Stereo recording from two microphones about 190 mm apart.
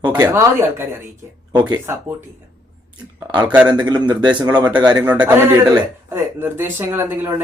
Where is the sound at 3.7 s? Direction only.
20° right (ahead or behind).